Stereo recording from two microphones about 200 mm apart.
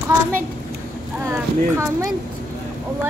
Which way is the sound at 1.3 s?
15° right (ahead or behind).